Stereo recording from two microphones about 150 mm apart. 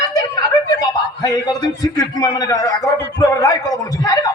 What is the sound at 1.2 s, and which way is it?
A man's voice, 25° left (ahead or behind).